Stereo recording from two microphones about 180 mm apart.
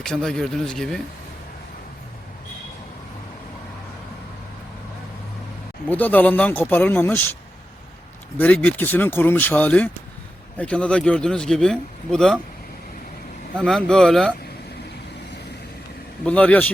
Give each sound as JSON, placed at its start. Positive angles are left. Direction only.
{"t": 0.0, "sound": "a man's voice", "side_deg": 5}
{"t": 5.9, "sound": "speech", "side_deg": 10}
{"t": 8.4, "sound": "a man's voice", "side_deg": 10}
{"t": 13.6, "sound": "a man's voice", "side_deg": 5}
{"t": 16.2, "sound": "speech", "side_deg": 5}